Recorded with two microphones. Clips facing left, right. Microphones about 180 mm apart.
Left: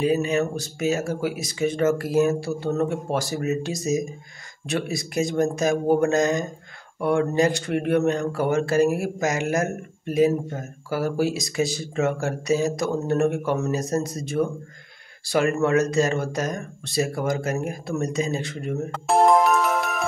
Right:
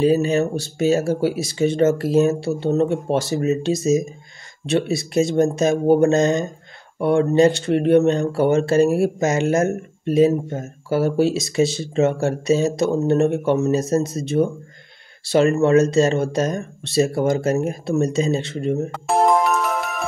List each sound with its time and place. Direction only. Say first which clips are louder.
0.0 s speech: right 5 dB; 30° right (ahead or behind)
18.9 s music: left 2 dB; centre (ahead or behind)